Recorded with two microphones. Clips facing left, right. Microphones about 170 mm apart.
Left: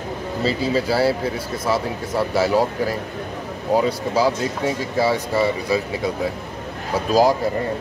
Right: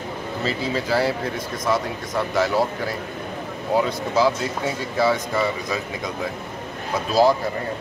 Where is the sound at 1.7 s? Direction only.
10° left (ahead or behind).